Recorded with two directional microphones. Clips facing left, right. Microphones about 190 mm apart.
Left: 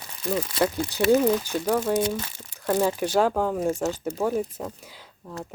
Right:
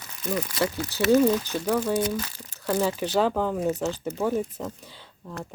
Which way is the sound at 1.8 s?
25° left (ahead or behind).